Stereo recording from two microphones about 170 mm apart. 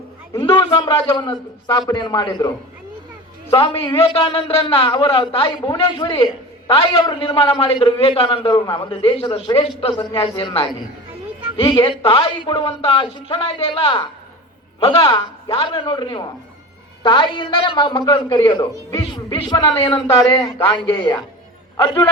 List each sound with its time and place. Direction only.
0.3 s a man's voice: 30° left (ahead or behind)
3.8 s a man's voice: 35° left (ahead or behind)
19.4 s a woman's voice: 30° left (ahead or behind)